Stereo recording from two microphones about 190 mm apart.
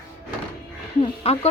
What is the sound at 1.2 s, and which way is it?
Speech, 30° left (ahead or behind).